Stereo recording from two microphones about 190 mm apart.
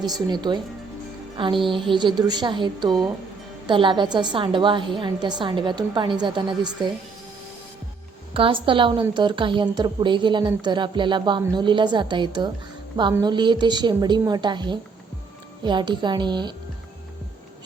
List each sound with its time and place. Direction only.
0.0 s a woman's voice: 20° right (ahead or behind)
8.3 s a woman's voice: 30° right (ahead or behind)